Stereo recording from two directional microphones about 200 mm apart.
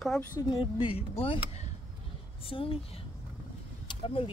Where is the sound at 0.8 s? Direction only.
30° left (ahead or behind).